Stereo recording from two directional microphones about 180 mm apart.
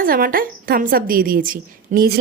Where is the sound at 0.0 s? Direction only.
55° right (ahead or behind).